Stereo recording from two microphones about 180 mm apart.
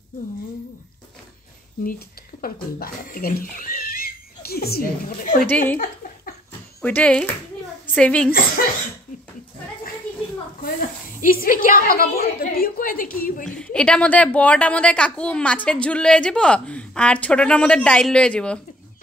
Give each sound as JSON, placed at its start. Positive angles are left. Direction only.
{"t": 1.9, "sound": "speech", "side_deg": 55}
{"t": 5.5, "sound": "speech", "side_deg": 10}
{"t": 6.8, "sound": "a woman's voice", "side_deg": 5}
{"t": 10.6, "sound": "a woman's voice", "side_deg": 50}
{"t": 13.5, "sound": "a woman's voice", "side_deg": 5}